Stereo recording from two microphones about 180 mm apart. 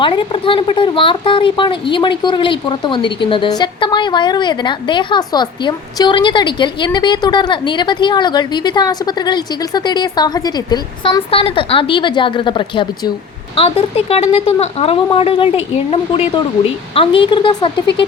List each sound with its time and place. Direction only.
0.0 s speech: 30° left (ahead or behind)